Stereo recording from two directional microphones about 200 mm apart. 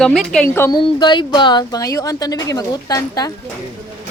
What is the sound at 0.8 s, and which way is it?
A woman's voice, 25° left (ahead or behind).